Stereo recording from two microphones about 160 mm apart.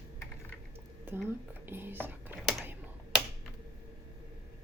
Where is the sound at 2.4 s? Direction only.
Centre (ahead or behind).